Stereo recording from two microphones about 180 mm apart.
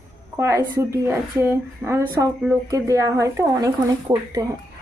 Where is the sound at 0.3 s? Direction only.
15° right (ahead or behind).